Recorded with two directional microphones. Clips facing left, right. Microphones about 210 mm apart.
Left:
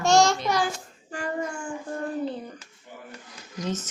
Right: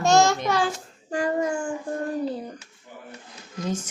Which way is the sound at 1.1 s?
40° right (ahead or behind).